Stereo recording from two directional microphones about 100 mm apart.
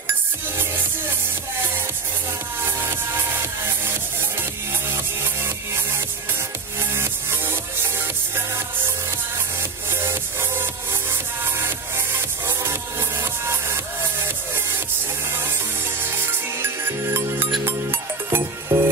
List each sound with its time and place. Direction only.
3.6 s music: 20° right (ahead or behind)
6.8 s music: 25° right (ahead or behind)
9.6 s music: 25° right (ahead or behind)
13.2 s music: 25° right (ahead or behind)
16.0 s music: 20° right (ahead or behind)